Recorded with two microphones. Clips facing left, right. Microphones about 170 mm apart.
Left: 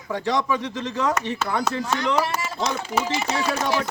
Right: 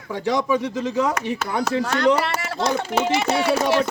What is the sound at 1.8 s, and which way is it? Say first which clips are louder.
Speech: right 8 dB; 70° right (ahead or behind).